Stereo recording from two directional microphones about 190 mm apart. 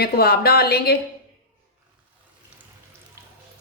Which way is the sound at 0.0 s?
55° left (ahead or behind).